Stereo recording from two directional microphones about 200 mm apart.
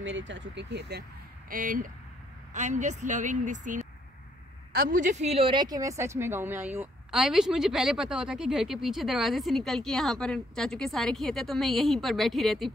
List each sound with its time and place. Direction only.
0.0 s speech: 65° right (ahead or behind)
1.5 s a woman's voice: 45° right (ahead or behind); by 12.7 s centre (ahead or behind)